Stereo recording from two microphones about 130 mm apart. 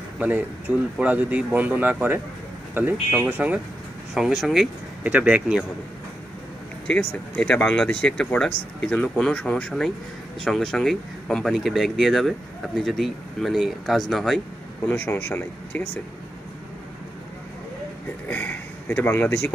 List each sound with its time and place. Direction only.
0.2 s speech: 10° right (ahead or behind)
6.9 s speech: 10° left (ahead or behind)
14.9 s speech: 15° left (ahead or behind)
18.3 s speech: 15° left (ahead or behind)